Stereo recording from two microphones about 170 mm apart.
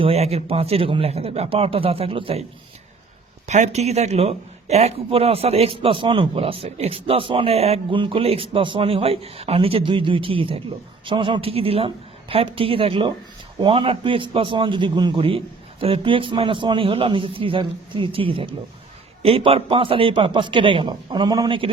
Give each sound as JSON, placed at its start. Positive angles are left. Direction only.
{"t": 0.0, "sound": "speech", "side_deg": -35}
{"t": 3.4, "sound": "a man's voice", "side_deg": -40}